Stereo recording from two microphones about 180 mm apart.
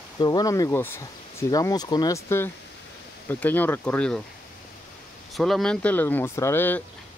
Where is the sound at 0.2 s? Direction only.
20° left (ahead or behind); by 4.2 s 5° left (ahead or behind).